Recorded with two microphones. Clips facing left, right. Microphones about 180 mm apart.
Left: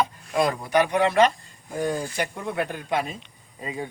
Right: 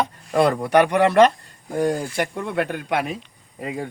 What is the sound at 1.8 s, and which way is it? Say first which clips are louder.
Speech: right 4 dB; 75° right (ahead or behind).